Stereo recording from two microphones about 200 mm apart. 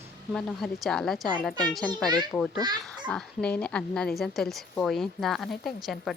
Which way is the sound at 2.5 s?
20° right (ahead or behind).